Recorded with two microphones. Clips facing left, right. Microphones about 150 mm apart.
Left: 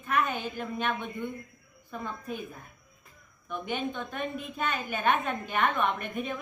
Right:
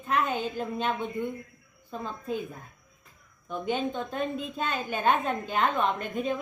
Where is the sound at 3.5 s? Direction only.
25° right (ahead or behind).